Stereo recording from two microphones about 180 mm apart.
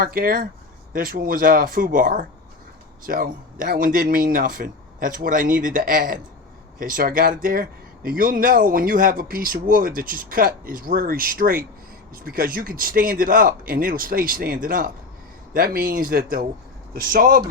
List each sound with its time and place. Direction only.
0.0 s speech: 55° right (ahead or behind)